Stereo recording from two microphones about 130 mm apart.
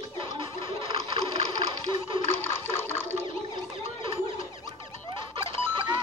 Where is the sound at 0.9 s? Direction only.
50° right (ahead or behind).